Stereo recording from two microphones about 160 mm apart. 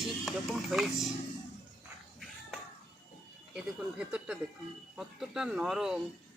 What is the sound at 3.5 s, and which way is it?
Speech, 5° right (ahead or behind).